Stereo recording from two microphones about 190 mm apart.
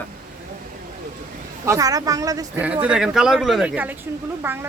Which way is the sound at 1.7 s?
20° right (ahead or behind).